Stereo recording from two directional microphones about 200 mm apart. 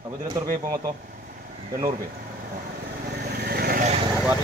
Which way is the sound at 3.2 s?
55° right (ahead or behind).